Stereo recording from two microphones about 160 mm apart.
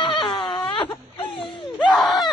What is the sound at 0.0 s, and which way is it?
Wail, 30° left (ahead or behind).